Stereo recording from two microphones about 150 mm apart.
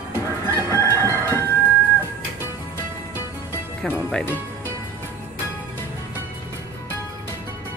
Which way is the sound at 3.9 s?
15° left (ahead or behind).